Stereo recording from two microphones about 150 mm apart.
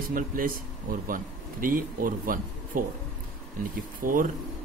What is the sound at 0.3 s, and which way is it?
Speech, 70° right (ahead or behind).